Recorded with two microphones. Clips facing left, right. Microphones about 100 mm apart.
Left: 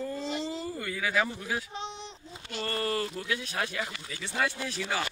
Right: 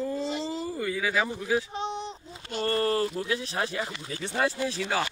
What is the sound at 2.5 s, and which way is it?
Speech, 40° right (ahead or behind).